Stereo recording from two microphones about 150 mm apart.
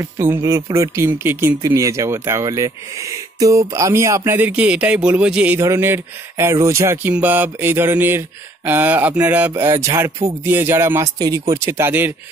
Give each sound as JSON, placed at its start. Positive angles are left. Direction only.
{"t": 0.2, "sound": "speech", "side_deg": -15}